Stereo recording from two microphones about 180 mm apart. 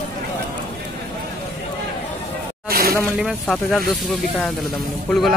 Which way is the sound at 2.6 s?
55° right (ahead or behind).